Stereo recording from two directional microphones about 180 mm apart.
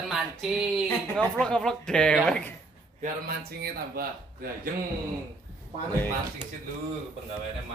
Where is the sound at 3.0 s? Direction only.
55° right (ahead or behind).